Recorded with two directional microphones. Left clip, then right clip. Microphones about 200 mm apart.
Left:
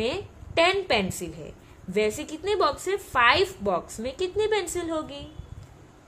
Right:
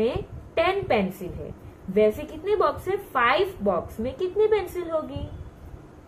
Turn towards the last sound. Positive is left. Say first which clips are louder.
# right 2 dB
turn(degrees=55)  # may be behind; listen again after turning